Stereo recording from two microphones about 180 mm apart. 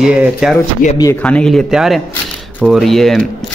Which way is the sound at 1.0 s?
10° left (ahead or behind).